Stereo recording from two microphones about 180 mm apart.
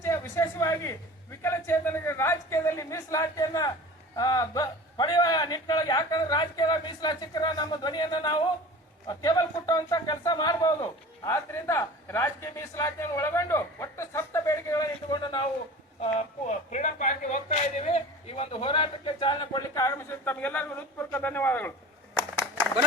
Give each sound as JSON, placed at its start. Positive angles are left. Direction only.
{"t": 0.0, "sound": "a woman's voice", "side_deg": 15}
{"t": 16.0, "sound": "speech", "side_deg": 40}